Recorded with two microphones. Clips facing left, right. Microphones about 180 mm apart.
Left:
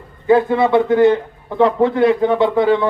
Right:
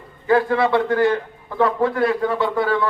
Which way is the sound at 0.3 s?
20° left (ahead or behind).